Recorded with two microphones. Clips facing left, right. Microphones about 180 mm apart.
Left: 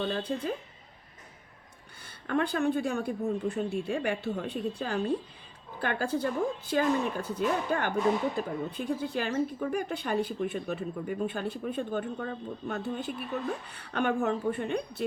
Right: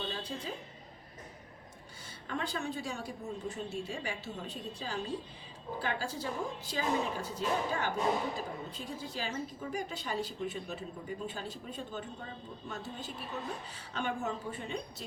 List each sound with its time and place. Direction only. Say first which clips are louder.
0.0 s speech: left 8 dB; 55° left (ahead or behind)
2.2 s speech: left 9 dB; 55° left (ahead or behind)